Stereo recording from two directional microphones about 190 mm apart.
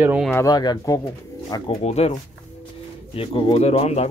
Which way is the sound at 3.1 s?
30° left (ahead or behind).